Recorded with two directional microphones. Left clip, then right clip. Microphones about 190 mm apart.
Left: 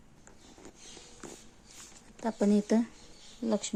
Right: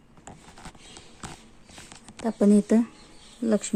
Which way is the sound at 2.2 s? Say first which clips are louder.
Right 7 dB; 15° right (ahead or behind).